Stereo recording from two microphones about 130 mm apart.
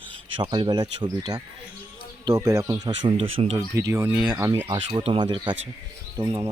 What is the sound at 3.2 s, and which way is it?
Speech, 50° right (ahead or behind).